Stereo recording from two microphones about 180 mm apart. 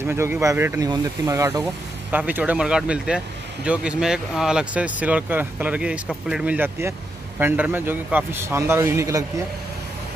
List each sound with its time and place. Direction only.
0.0 s speech: 15° right (ahead or behind)